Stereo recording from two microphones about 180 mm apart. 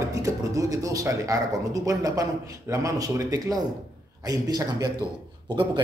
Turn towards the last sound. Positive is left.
turn(degrees=-25)  # may be behind; listen again after turning